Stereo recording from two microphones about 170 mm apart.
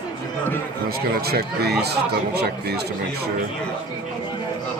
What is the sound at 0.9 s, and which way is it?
Speech, 65° right (ahead or behind).